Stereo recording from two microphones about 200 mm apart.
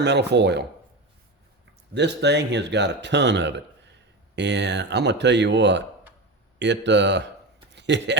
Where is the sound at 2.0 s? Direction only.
60° right (ahead or behind).